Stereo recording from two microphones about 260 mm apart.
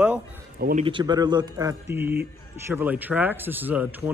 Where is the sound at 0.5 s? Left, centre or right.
Right.